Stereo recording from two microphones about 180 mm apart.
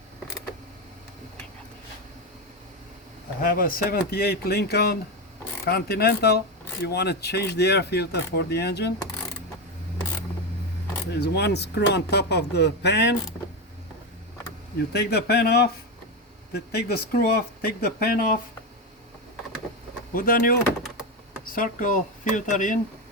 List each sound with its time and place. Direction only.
3.4 s speech: 55° left (ahead or behind)
11.1 s speech: 70° left (ahead or behind)
14.9 s speech: 65° left (ahead or behind)
20.1 s speech: 50° left (ahead or behind)